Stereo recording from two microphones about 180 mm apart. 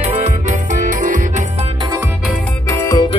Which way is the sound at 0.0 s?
40° right (ahead or behind).